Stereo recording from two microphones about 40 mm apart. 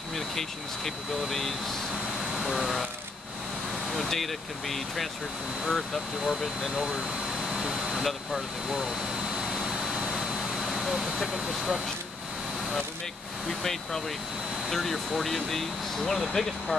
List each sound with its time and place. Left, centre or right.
0.1 s speech: centre
4.0 s speech: centre
6.8 s air conditioning: centre
8.0 s speech: centre
8.6 s jet engine: centre
10.1 s vehicle: centre
13.5 s speech: centre